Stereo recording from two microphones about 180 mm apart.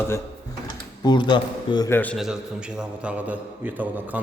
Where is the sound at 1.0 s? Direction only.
25° left (ahead or behind).